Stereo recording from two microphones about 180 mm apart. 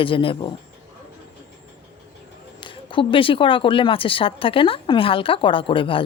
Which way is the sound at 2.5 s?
25° left (ahead or behind).